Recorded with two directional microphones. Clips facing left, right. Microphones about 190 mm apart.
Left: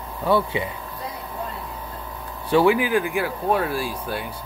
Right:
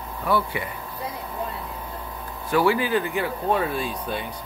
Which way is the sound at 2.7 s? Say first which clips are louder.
Left 2 dB; 15° left (ahead or behind).